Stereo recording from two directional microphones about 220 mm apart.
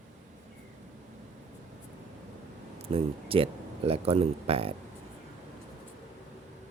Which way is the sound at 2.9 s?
25° right (ahead or behind).